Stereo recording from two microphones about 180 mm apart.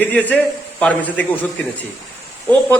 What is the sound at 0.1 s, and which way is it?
A man's voice, 10° left (ahead or behind).